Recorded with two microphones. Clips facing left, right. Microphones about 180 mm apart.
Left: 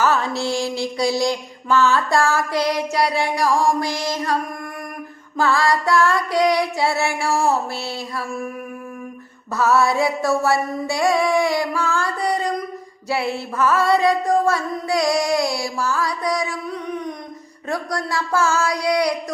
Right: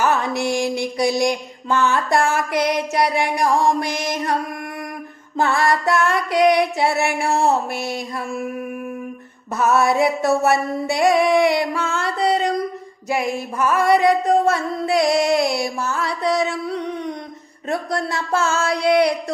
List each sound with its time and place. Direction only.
0.0 s mantra: 20° right (ahead or behind)
5.4 s mantra: 20° right (ahead or behind)
9.6 s mantra: 20° right (ahead or behind)